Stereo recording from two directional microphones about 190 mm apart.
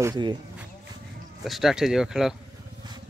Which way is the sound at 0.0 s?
20° right (ahead or behind).